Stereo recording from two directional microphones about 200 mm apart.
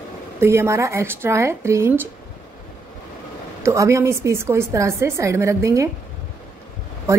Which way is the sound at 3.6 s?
15° right (ahead or behind).